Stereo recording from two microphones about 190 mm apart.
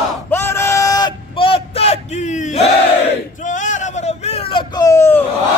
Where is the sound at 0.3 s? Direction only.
10° left (ahead or behind).